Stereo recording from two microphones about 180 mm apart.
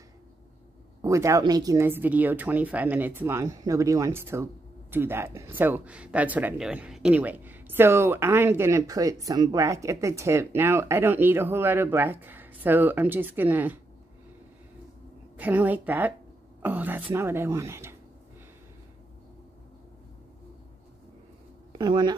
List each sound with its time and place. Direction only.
1.0 s speech: 15° right (ahead or behind)
15.3 s speech: 10° right (ahead or behind)
21.7 s speech: 25° right (ahead or behind)